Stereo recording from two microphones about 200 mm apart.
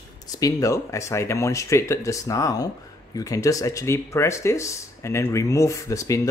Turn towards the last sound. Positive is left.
turn(degrees=15)  # may be behind; listen again after turning